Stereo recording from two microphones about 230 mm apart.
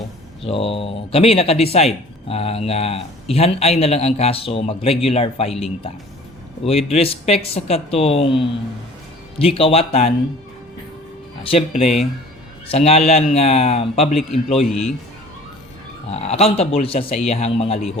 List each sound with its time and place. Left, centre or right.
0.4 s speech: left
11.4 s speech: left
14.6 s a man's voice: centre
16.0 s speech: left